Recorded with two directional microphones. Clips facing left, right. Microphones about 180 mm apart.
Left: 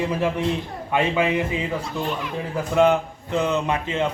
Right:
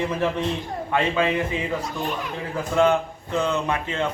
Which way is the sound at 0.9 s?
15° left (ahead or behind).